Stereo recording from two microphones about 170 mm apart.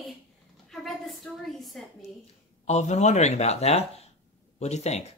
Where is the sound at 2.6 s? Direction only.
40° left (ahead or behind).